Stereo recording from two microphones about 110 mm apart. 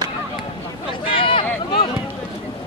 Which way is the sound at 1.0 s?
55° left (ahead or behind).